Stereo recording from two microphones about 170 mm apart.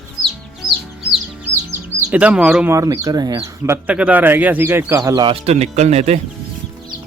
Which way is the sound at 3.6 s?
10° right (ahead or behind).